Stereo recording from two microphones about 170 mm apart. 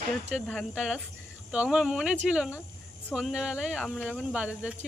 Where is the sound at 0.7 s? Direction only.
5° right (ahead or behind).